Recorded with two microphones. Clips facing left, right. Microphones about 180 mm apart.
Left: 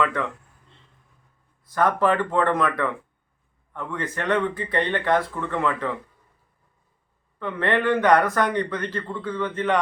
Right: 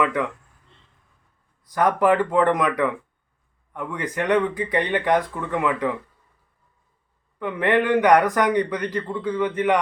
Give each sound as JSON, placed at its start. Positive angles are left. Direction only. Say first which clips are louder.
{"t": 0.0, "sound": "a man's voice", "louder": "right 2 dB", "side_deg": -10}
{"t": 1.6, "sound": "a man's voice", "louder": "right 2 dB", "side_deg": -15}
{"t": 7.3, "sound": "a man's voice", "louder": "right 3 dB", "side_deg": -15}